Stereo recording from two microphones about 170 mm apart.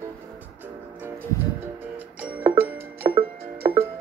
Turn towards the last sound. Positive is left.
turn(degrees=-15)  # may be behind; listen again after turning